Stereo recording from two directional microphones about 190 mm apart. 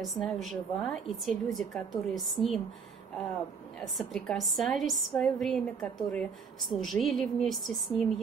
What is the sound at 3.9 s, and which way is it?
A woman's voice, centre (ahead or behind).